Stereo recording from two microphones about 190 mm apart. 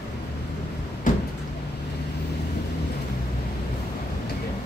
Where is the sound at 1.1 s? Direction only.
45° left (ahead or behind).